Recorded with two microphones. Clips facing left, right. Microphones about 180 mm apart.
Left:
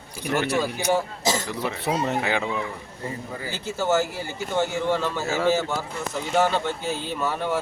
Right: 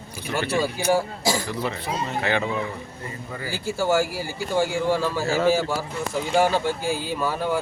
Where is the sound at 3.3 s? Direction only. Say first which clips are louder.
Right 2 dB; 20° left (ahead or behind).